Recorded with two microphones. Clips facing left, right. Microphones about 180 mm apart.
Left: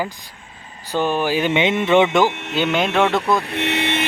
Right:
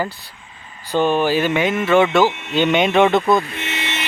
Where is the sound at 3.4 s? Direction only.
65° left (ahead or behind).